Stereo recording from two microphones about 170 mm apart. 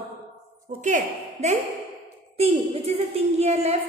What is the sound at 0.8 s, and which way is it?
Speech, 45° right (ahead or behind).